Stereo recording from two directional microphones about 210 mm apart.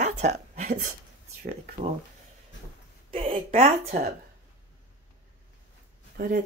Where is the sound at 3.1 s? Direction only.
25° right (ahead or behind).